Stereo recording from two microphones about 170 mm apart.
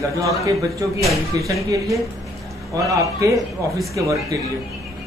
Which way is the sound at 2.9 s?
20° right (ahead or behind).